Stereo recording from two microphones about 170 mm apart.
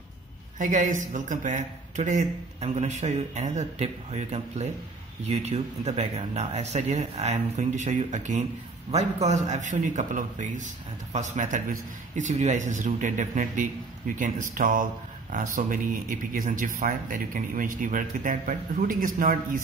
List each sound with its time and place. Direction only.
0.6 s a man's voice: 50° right (ahead or behind)